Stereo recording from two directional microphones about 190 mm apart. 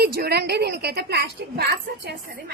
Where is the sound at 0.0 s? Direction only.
55° right (ahead or behind).